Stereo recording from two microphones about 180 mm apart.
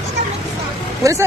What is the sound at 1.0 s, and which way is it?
Speech, 15° right (ahead or behind).